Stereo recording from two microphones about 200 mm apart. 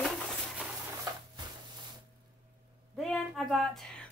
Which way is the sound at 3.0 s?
Centre (ahead or behind).